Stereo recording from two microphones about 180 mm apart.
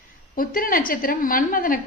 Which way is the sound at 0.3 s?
50° left (ahead or behind).